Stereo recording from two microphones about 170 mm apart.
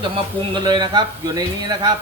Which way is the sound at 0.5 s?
25° right (ahead or behind).